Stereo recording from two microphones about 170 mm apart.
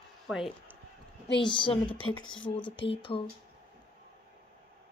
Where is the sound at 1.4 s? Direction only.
30° left (ahead or behind).